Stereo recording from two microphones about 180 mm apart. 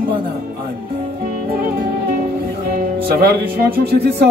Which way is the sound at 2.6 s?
60° right (ahead or behind).